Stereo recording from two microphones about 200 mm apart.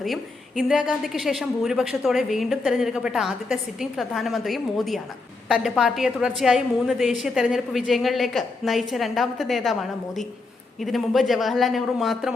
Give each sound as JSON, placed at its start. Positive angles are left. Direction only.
{"t": 0.0, "sound": "a woman's voice", "side_deg": 0}
{"t": 10.8, "sound": "a woman's voice", "side_deg": 0}